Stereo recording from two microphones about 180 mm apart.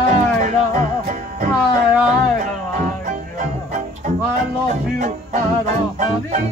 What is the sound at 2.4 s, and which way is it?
Music, 45° right (ahead or behind).